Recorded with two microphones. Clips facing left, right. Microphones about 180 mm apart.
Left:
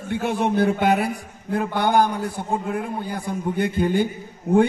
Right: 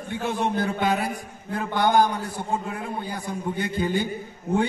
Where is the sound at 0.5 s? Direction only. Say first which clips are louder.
Left 5 dB; 65° left (ahead or behind).